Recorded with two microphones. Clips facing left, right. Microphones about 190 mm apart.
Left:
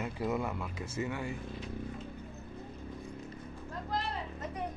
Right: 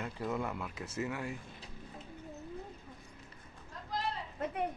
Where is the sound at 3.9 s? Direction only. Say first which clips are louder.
Left 2 dB; 55° left (ahead or behind).